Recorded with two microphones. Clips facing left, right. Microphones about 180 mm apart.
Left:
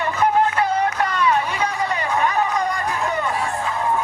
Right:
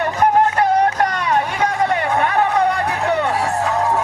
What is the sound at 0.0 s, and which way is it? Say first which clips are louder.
Vehicle: right 3 dB; 45° right (ahead or behind).